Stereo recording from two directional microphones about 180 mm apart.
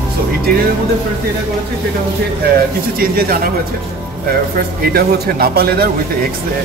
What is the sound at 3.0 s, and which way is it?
Speech, 55° right (ahead or behind).